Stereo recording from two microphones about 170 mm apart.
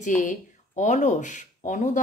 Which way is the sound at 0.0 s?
45° left (ahead or behind).